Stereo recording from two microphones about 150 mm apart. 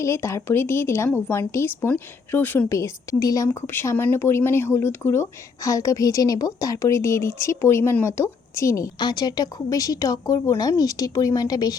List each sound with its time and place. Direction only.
0.0 s speech: 20° left (ahead or behind)